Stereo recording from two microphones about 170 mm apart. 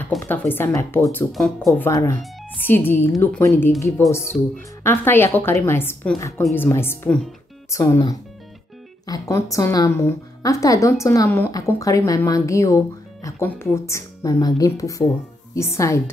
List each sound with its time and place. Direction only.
0.3 s a woman's voice: 10° left (ahead or behind)
1.3 s speech: centre (ahead or behind)
1.7 s a woman's voice: 15° left (ahead or behind); by 4.5 s centre (ahead or behind)
4.8 s a woman's voice: 15° left (ahead or behind)